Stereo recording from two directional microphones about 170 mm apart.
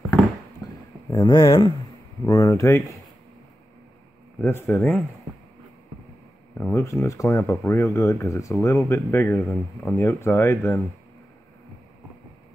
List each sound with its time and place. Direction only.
0.6 s a sound: 20° left (ahead or behind)
1.1 s speech: 30° left (ahead or behind)
2.2 s speech: 20° left (ahead or behind)
4.4 s speech: 15° left (ahead or behind)
6.7 s speech: 15° left (ahead or behind)
9.4 s speech: centre (ahead or behind)
9.9 s speech: 15° left (ahead or behind)